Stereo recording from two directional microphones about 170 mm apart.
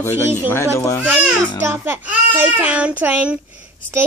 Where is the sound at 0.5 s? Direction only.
15° left (ahead or behind).